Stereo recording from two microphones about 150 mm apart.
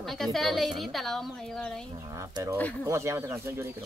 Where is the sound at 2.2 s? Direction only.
20° right (ahead or behind).